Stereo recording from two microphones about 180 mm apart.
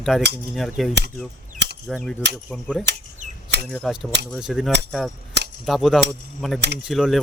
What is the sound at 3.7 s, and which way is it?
Speech, centre (ahead or behind).